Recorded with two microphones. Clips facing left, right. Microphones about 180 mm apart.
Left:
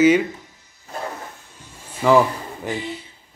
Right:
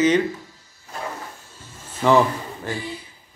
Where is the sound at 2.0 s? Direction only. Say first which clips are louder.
Left 1 dB; 10° left (ahead or behind).